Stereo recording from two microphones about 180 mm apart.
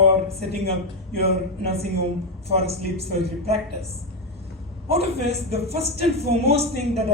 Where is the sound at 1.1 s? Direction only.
35° right (ahead or behind).